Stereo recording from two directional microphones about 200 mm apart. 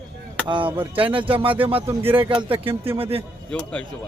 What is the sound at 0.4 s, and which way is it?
Speech, 25° right (ahead or behind).